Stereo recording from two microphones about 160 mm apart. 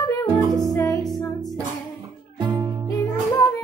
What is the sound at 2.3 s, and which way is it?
Music, 30° right (ahead or behind).